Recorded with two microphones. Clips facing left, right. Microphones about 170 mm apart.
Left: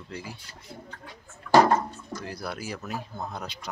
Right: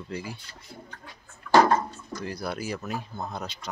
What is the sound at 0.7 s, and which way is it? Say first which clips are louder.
Speech: left 1 dB; 20° left (ahead or behind).